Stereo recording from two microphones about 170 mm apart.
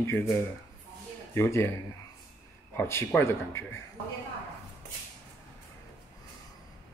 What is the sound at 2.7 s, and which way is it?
Speech, 15° left (ahead or behind).